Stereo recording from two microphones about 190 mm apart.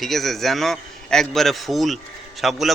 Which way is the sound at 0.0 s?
Centre (ahead or behind).